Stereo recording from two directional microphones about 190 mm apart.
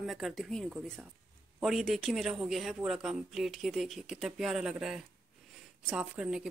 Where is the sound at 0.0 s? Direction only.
Centre (ahead or behind).